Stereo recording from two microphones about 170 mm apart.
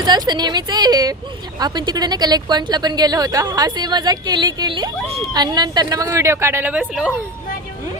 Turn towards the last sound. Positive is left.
turn(degrees=-5)  # may be behind; listen again after turning